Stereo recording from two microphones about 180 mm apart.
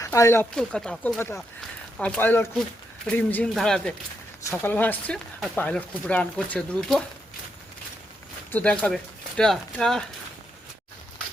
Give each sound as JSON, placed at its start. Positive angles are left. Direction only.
{"t": 0.0, "sound": "speech", "side_deg": 15}
{"t": 0.5, "sound": "speech", "side_deg": 5}
{"t": 8.5, "sound": "speech", "side_deg": 5}